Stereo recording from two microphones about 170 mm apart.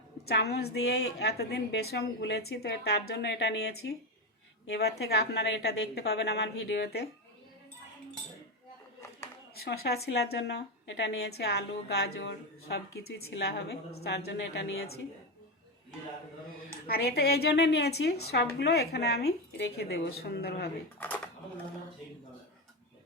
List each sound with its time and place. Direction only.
0.3 s a woman's voice: 70° left (ahead or behind)
9.6 s a woman's voice: 70° left (ahead or behind)
13.3 s a woman's voice: 80° left
16.8 s a woman's voice: 65° left (ahead or behind)